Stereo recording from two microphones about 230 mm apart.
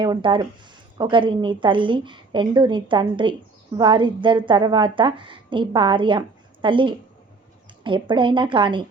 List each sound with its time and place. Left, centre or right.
0.0 s a woman's voice: centre